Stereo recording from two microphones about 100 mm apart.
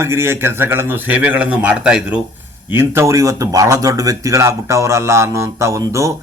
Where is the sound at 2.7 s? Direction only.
25° right (ahead or behind).